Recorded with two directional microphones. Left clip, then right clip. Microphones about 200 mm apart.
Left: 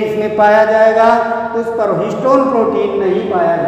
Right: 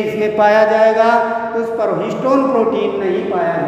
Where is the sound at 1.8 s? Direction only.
5° right (ahead or behind).